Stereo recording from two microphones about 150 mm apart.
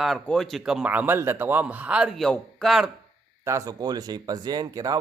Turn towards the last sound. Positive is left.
turn(degrees=-25)  # may be behind; listen again after turning